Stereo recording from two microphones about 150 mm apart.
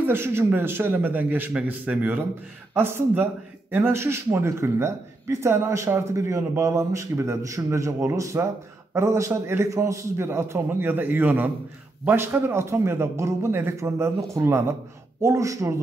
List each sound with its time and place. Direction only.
0.0 s a man's voice: 15° right (ahead or behind)